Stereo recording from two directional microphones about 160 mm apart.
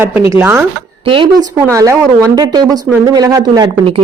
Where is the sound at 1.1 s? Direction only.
30° right (ahead or behind).